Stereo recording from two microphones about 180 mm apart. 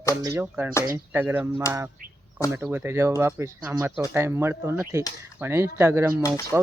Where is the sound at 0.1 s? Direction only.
20° right (ahead or behind).